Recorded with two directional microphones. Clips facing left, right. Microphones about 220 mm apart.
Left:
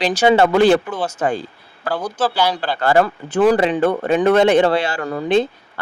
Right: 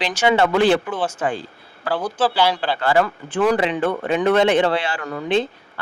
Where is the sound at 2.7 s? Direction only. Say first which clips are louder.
Left 6 dB; 45° left (ahead or behind).